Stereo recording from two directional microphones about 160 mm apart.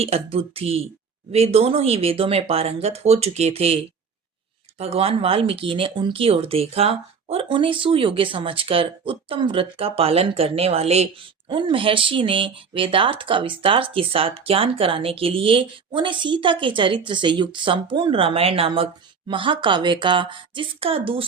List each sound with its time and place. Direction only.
0.0 s speech: 40° right (ahead or behind)
4.8 s speech: 40° right (ahead or behind)
11.4 s speech: 30° right (ahead or behind)